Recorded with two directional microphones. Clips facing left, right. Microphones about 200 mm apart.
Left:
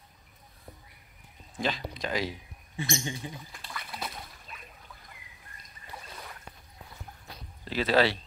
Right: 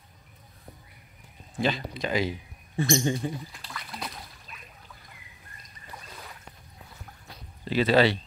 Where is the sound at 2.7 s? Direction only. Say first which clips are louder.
Right 9 dB; 55° right (ahead or behind).